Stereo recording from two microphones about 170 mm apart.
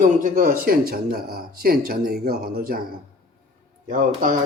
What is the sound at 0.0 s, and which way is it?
Speech, 55° right (ahead or behind).